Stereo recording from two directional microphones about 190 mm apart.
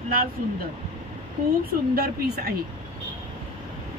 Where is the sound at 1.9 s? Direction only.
55° right (ahead or behind).